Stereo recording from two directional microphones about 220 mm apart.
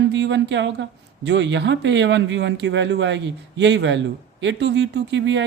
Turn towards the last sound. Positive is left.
turn(degrees=-55)  # may be behind; listen again after turning